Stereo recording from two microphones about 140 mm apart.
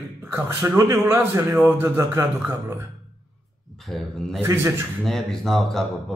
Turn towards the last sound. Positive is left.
turn(degrees=0)  # may be behind; listen again after turning